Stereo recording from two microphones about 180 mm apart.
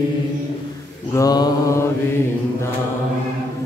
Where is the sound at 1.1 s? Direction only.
20° left (ahead or behind).